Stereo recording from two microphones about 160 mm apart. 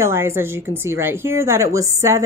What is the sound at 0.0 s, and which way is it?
Speech, 15° right (ahead or behind).